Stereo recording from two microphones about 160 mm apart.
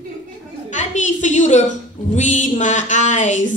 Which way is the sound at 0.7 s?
50° left (ahead or behind).